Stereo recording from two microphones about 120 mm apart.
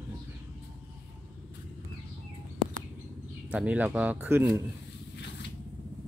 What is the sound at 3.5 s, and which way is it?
Speech, 10° right (ahead or behind).